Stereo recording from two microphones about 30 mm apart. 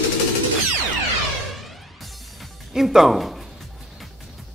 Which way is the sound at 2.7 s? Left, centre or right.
Centre.